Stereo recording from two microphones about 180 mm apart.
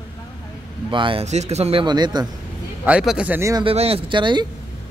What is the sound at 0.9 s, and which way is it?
Speech, 30° right (ahead or behind).